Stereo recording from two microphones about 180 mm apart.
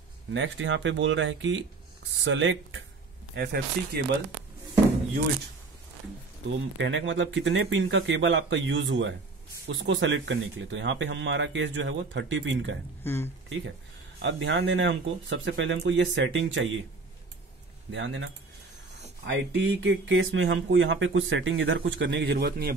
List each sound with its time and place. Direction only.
0.3 s speech: 90° right
3.3 s speech: 65° right (ahead or behind)
6.8 s speech: 90° right
13.0 s speech: 15° left (ahead or behind)
14.2 s speech: 85° right
17.9 s speech: 90° right; by 22.8 s 60° right (ahead or behind)